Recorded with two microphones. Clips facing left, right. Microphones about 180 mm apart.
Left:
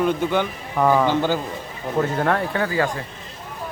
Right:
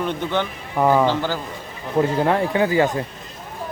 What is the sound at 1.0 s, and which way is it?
Speech, 15° left (ahead or behind).